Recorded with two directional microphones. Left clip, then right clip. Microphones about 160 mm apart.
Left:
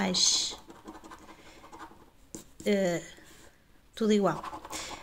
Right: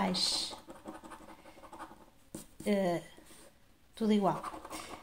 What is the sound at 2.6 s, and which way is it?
Speech, 30° left (ahead or behind).